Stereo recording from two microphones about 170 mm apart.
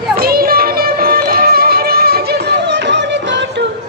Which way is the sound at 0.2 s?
60° right (ahead or behind).